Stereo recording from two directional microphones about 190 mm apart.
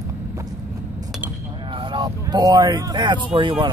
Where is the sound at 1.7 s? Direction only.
25° right (ahead or behind).